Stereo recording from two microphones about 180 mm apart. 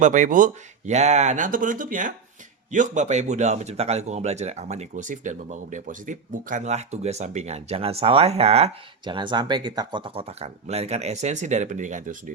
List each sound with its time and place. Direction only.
0.0 s speech: 45° right (ahead or behind)